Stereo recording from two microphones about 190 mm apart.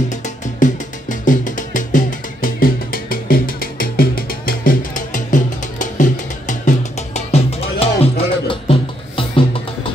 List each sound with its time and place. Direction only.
0.1 s music: 40° left (ahead or behind)